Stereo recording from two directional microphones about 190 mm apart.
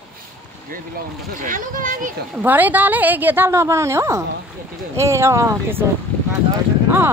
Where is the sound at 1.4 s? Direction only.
45° right (ahead or behind).